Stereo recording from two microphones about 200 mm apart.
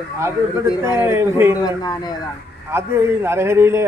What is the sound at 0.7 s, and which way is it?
Speech, 20° left (ahead or behind).